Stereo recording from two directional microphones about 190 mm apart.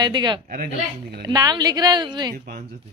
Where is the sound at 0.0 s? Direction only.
25° right (ahead or behind).